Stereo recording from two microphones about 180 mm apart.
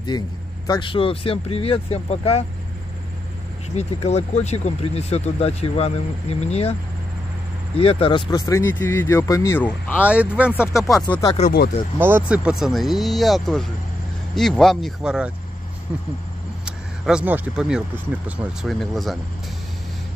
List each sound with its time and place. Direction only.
0.7 s speech: 25° left (ahead or behind)
3.7 s speech: 35° left (ahead or behind)
7.7 s speech: 30° left (ahead or behind); by 10.0 s 10° left (ahead or behind)
10.0 s speech: 5° right (ahead or behind)
10.4 s speech: 10° left (ahead or behind)
11.4 s speech: 35° left (ahead or behind)
12.0 s speech: 10° right (ahead or behind)